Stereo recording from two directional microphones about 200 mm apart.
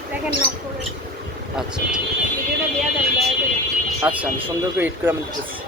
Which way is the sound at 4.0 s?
5° right (ahead or behind).